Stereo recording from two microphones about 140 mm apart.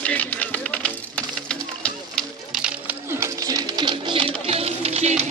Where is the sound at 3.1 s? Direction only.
25° right (ahead or behind).